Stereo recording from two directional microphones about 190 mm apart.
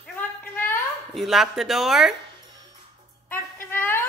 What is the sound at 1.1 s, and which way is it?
Speech, centre (ahead or behind).